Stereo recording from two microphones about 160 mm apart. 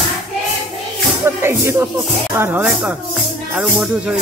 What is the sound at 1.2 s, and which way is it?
Speech, 15° right (ahead or behind).